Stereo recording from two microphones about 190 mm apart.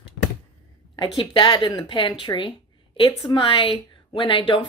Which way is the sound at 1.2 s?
25° left (ahead or behind).